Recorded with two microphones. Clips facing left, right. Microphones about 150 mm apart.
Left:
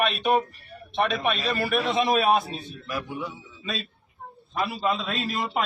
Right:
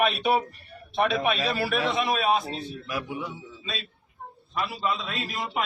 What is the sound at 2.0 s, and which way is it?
Speech, 45° left (ahead or behind).